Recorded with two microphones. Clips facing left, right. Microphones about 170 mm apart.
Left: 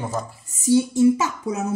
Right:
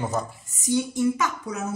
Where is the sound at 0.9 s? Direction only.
20° left (ahead or behind).